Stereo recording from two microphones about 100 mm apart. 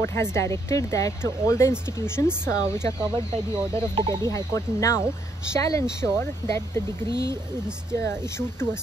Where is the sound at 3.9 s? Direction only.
45° right (ahead or behind).